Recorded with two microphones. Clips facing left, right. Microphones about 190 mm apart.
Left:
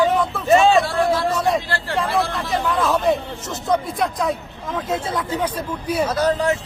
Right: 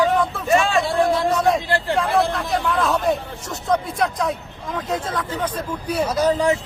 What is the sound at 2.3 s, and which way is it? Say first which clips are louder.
Speech: even; centre (ahead or behind).